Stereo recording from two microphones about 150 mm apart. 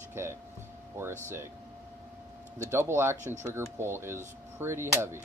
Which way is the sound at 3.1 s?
55° right (ahead or behind).